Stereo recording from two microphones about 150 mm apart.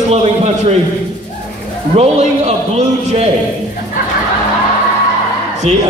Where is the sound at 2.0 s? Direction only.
45° right (ahead or behind).